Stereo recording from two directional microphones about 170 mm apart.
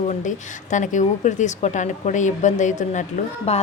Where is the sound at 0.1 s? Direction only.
45° left (ahead or behind).